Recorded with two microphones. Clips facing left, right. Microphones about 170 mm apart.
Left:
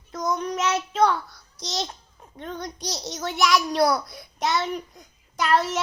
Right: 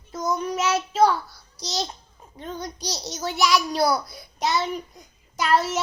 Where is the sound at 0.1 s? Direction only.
5° right (ahead or behind).